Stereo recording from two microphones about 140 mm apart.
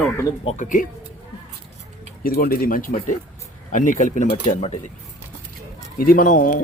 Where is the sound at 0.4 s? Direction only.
60° left (ahead or behind).